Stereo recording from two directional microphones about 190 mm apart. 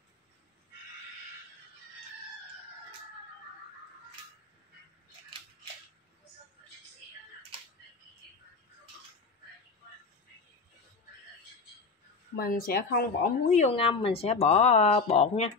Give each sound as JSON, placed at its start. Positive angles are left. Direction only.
{"t": 12.4, "sound": "speech", "side_deg": 55}